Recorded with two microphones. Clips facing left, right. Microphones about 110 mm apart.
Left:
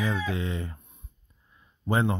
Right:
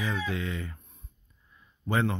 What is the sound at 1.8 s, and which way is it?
Speech, 25° left (ahead or behind).